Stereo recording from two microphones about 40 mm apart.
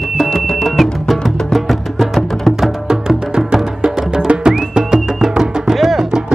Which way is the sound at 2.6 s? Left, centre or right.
Centre.